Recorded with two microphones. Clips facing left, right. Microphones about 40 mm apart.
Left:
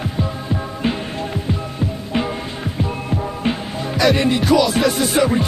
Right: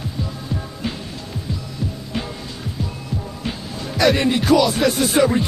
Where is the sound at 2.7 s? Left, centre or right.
Left.